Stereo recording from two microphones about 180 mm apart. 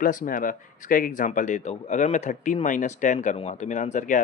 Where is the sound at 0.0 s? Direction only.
50° left (ahead or behind).